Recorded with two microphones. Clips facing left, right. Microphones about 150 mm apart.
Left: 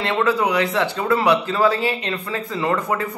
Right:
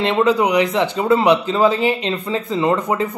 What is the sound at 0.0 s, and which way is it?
A man's voice, 20° right (ahead or behind).